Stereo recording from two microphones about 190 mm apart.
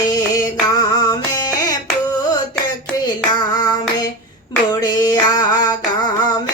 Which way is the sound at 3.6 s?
20° left (ahead or behind).